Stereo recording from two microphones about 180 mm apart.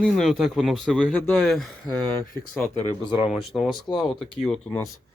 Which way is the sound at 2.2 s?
50° left (ahead or behind).